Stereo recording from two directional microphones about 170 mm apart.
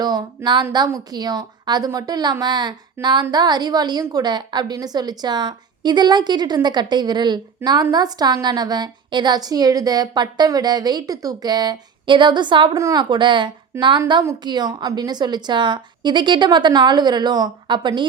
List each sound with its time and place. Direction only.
0.0 s a woman's voice: 20° right (ahead or behind)